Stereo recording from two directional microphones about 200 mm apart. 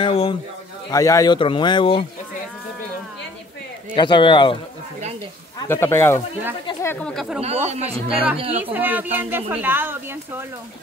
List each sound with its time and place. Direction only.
0.0 s a sound: 25° left (ahead or behind)
0.8 s speech: 15° left (ahead or behind)
3.9 s speech: 25° left (ahead or behind)
5.6 s speech: 10° left (ahead or behind)
7.4 s speech: 35° right (ahead or behind)
8.7 s speech: 10° right (ahead or behind)